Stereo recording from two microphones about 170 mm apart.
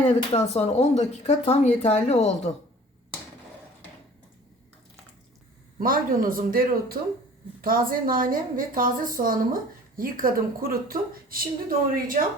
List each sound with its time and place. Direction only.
0.3 s speech: 40° left (ahead or behind)
5.8 s a woman's voice: 55° right (ahead or behind)